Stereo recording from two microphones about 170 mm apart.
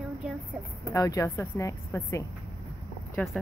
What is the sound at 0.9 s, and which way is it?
A woman's voice, 20° left (ahead or behind).